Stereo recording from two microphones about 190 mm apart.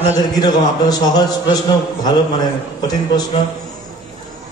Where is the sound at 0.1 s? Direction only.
20° left (ahead or behind).